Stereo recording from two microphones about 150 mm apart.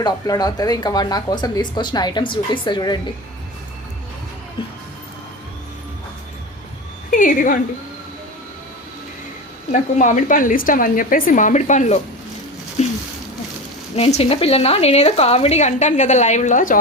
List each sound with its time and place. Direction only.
0.0 s speech: 25° left (ahead or behind)
7.1 s a woman's voice: 65° left (ahead or behind)
9.7 s a woman's voice: 55° left (ahead or behind)
12.8 s a sound: 50° left (ahead or behind)
13.9 s speech: 40° left (ahead or behind)